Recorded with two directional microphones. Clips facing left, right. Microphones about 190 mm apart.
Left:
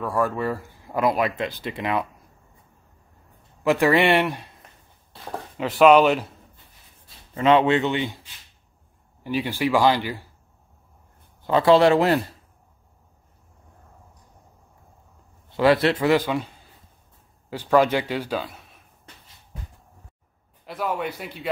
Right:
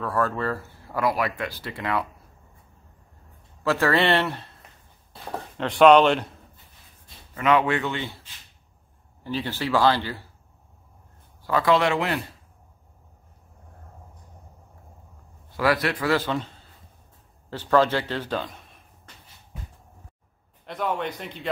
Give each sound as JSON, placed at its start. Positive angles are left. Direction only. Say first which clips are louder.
{"t": 0.0, "sound": "speech", "louder": "left 2 dB", "side_deg": 10}
{"t": 3.6, "sound": "speech", "louder": "left 3 dB", "side_deg": 15}
{"t": 5.6, "sound": "speech", "louder": "even", "side_deg": 5}
{"t": 7.3, "sound": "speech", "louder": "left 4 dB", "side_deg": 25}
{"t": 11.4, "sound": "speech", "louder": "left 5 dB", "side_deg": 25}
{"t": 15.5, "sound": "a man's voice", "louder": "left 5 dB", "side_deg": 25}
{"t": 20.6, "sound": "speech", "louder": "even", "side_deg": 5}